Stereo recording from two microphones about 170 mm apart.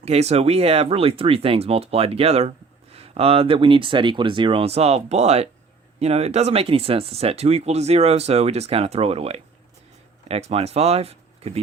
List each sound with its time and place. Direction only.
0.0 s speech: 40° right (ahead or behind)